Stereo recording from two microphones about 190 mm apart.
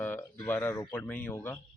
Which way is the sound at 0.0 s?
10° left (ahead or behind).